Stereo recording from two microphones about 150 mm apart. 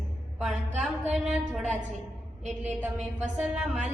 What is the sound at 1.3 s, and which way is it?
A woman's voice, 5° right (ahead or behind).